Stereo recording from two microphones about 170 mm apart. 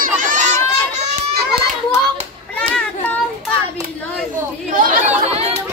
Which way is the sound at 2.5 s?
5° left (ahead or behind).